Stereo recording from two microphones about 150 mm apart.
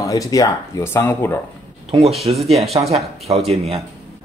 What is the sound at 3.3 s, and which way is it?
Speech, 40° right (ahead or behind).